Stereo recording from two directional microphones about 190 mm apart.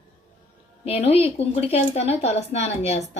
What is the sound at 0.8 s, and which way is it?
A woman's voice, 30° left (ahead or behind).